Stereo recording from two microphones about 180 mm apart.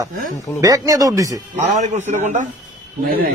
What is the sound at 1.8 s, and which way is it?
Speech, 40° right (ahead or behind).